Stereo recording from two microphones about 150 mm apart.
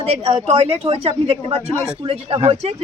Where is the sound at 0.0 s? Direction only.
45° right (ahead or behind).